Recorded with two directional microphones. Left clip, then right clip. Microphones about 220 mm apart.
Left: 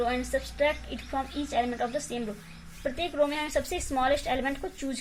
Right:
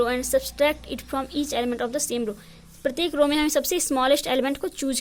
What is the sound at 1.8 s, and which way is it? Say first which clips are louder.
Speech: right 4 dB; 50° right (ahead or behind).